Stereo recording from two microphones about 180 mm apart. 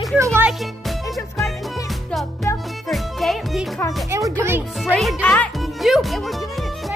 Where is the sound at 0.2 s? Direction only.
15° right (ahead or behind).